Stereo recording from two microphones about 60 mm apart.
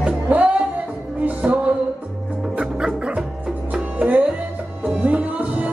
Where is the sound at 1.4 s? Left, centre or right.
Centre.